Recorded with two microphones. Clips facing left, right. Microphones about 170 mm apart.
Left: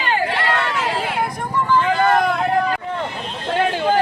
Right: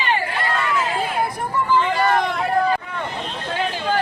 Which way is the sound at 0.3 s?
75° left (ahead or behind).